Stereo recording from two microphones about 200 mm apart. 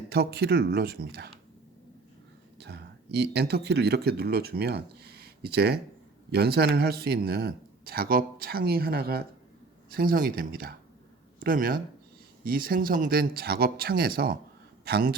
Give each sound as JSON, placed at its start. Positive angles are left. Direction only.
{"t": 0.1, "sound": "speech", "side_deg": -55}
{"t": 2.6, "sound": "a man's voice", "side_deg": -55}